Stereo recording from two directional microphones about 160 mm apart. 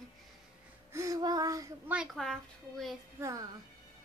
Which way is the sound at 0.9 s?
20° right (ahead or behind).